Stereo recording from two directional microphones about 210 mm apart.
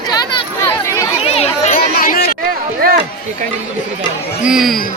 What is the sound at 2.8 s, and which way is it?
Run, 45° right (ahead or behind).